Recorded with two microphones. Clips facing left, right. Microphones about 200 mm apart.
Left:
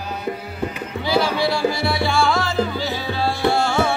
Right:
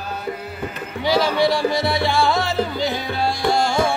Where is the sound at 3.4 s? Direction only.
10° right (ahead or behind).